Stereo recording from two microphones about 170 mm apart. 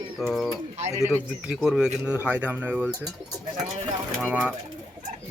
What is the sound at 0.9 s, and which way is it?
Speech, 20° right (ahead or behind).